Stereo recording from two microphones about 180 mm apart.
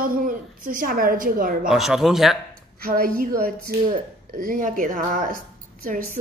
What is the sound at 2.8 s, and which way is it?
Speech, 55° right (ahead or behind).